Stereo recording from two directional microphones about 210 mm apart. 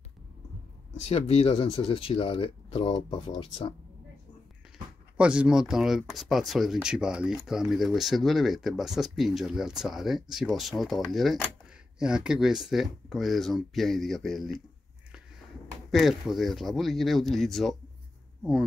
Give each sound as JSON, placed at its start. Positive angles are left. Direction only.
{"t": 1.0, "sound": "speech", "side_deg": 30}
{"t": 5.1, "sound": "speech", "side_deg": -5}
{"t": 15.9, "sound": "speech", "side_deg": 0}